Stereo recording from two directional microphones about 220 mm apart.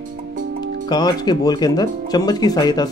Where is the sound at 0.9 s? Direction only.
20° left (ahead or behind).